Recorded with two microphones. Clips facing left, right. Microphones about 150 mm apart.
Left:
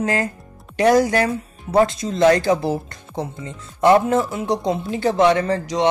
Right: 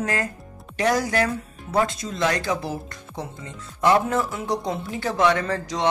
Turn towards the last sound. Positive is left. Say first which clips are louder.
# left 6 dB
turn(degrees=20)  # may be behind; listen again after turning